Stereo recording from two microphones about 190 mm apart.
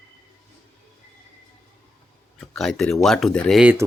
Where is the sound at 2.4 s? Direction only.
Centre (ahead or behind).